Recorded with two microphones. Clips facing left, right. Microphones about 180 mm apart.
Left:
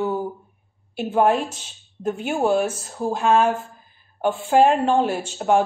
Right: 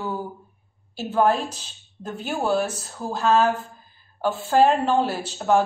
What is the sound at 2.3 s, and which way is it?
A woman's voice, 10° left (ahead or behind).